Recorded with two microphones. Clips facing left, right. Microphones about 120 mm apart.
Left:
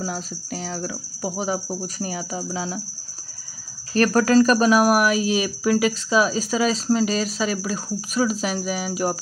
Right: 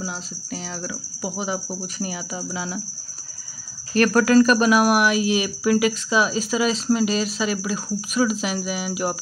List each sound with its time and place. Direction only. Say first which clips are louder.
0.0 s speech: left 3 dB; 45° left (ahead or behind)
3.9 s speech: right 1 dB; 35° left (ahead or behind)